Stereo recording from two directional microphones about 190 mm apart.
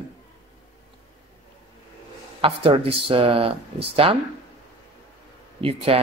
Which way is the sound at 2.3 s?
30° right (ahead or behind).